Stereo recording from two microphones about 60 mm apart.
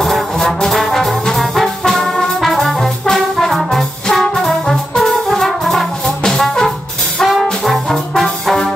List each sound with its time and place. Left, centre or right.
0.0 s trombone: centre
7.2 s brass instrument: centre